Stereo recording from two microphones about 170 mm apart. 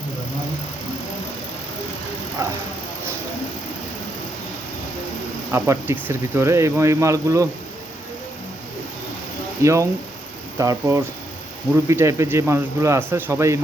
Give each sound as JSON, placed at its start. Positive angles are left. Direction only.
{"t": 2.4, "sound": "speech", "side_deg": -15}
{"t": 5.5, "sound": "speech", "side_deg": -15}
{"t": 9.6, "sound": "speech", "side_deg": -15}